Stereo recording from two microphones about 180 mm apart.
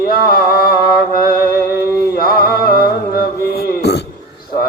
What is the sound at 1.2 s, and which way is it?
Music, 55° left (ahead or behind).